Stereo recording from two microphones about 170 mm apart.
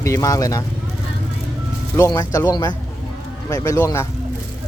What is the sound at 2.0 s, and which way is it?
Speech, 20° left (ahead or behind).